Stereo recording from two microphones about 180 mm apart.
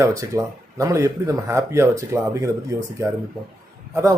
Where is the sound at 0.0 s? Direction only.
15° right (ahead or behind).